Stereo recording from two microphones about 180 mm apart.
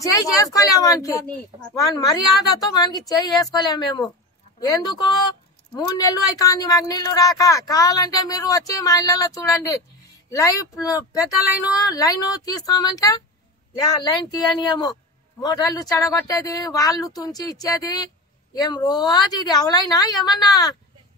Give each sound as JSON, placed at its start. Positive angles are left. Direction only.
{"t": 0.0, "sound": "speech", "side_deg": 20}